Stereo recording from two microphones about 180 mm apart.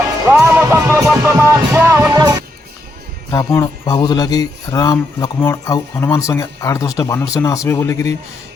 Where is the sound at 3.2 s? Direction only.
20° left (ahead or behind).